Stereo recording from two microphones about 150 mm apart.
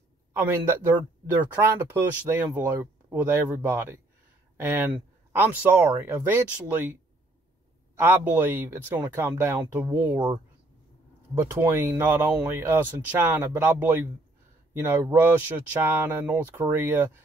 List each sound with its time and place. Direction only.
0.3 s speech: 15° right (ahead or behind)
10.1 s speech: 30° right (ahead or behind)
11.3 s speech: 15° right (ahead or behind)